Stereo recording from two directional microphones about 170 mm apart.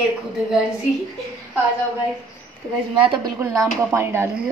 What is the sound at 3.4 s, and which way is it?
Speech, 15° right (ahead or behind).